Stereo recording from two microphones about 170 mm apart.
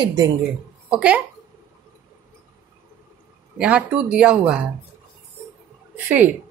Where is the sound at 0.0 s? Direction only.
20° right (ahead or behind).